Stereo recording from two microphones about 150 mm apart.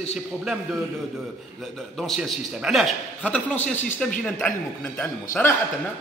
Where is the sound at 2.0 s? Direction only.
Centre (ahead or behind).